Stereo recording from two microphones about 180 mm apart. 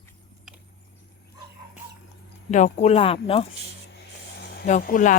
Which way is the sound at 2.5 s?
40° left (ahead or behind).